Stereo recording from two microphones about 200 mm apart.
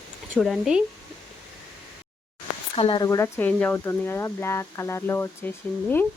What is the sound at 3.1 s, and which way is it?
Speech, 15° left (ahead or behind).